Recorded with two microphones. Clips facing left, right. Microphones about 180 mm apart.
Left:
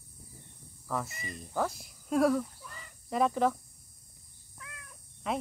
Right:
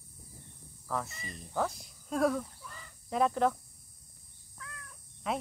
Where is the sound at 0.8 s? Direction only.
Centre (ahead or behind).